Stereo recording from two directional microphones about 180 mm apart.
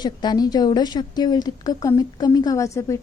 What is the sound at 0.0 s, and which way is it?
A woman's voice, 25° left (ahead or behind).